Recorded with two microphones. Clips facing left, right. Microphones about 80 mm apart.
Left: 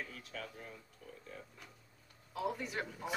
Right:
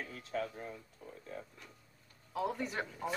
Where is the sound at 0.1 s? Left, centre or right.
Right.